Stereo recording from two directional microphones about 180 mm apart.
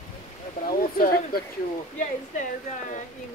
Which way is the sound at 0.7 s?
55° left (ahead or behind).